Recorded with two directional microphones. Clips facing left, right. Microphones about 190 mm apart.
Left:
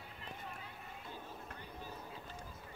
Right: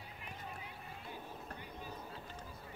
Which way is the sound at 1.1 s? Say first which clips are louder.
Right 2 dB; 15° right (ahead or behind).